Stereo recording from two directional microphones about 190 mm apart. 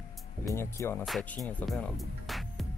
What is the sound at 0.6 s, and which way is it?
Speech, 15° left (ahead or behind).